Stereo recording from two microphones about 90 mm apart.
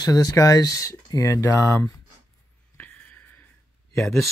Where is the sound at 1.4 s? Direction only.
25° left (ahead or behind).